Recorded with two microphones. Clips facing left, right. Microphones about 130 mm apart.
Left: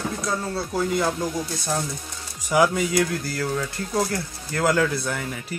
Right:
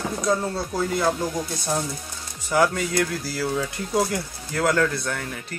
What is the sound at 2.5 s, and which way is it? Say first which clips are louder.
Speech: left 1 dB; 10° left (ahead or behind).